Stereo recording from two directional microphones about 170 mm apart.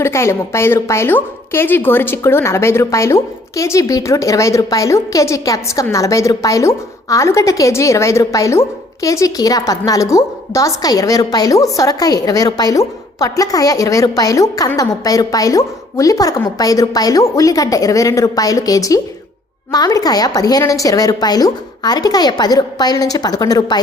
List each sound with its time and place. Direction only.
0.0 s a woman's voice: 15° left (ahead or behind)